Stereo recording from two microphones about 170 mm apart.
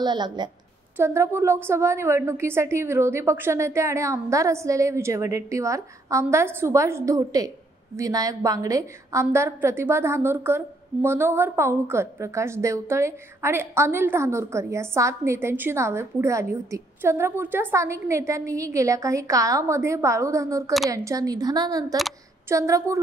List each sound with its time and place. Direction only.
0.0 s a woman's voice: 25° right (ahead or behind)